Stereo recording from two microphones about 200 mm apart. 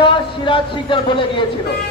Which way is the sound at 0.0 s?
25° left (ahead or behind).